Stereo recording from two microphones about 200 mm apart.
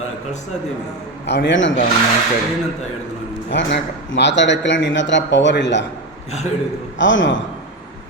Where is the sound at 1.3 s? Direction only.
60° left (ahead or behind).